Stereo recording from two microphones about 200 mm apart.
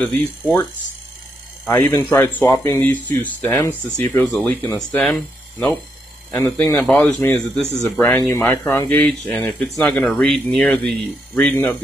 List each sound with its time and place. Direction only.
0.0 s speech: 15° left (ahead or behind)
1.7 s speech: 10° left (ahead or behind)